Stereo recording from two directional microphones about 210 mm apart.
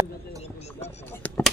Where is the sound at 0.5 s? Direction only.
30° left (ahead or behind).